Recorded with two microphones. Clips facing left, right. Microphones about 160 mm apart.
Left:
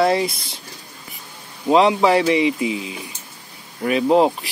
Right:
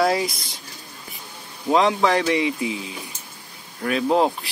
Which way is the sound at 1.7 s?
5° left (ahead or behind).